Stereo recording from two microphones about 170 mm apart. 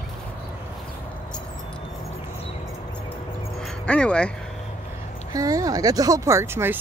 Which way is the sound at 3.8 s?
5° left (ahead or behind).